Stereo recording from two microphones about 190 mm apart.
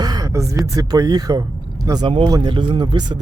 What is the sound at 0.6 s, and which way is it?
Speech, 15° right (ahead or behind).